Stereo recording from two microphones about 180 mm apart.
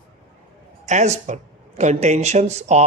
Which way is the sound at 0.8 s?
40° right (ahead or behind).